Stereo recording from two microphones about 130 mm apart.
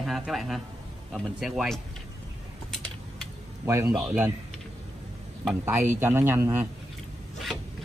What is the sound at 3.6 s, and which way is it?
Speech, 20° right (ahead or behind).